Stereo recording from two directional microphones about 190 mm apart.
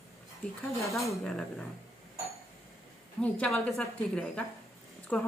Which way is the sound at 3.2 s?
5° left (ahead or behind).